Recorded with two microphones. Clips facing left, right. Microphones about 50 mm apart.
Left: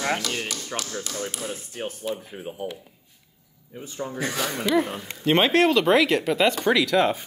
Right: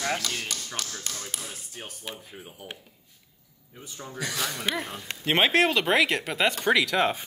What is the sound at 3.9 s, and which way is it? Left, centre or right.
Speech, left.